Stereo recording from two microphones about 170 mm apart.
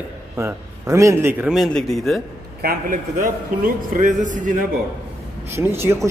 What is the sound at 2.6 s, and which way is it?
A man's voice, 55° right (ahead or behind).